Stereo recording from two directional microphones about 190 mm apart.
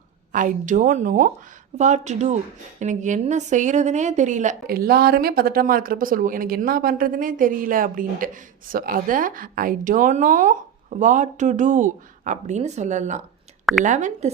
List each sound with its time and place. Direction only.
0.3 s a woman's voice: 40° right (ahead or behind)